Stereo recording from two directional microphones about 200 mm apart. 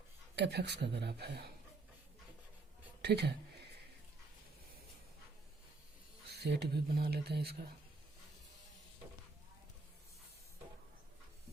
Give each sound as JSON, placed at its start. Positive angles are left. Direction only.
{"t": 0.3, "sound": "speech", "side_deg": -55}
{"t": 3.0, "sound": "speech", "side_deg": -55}
{"t": 6.2, "sound": "speech", "side_deg": -55}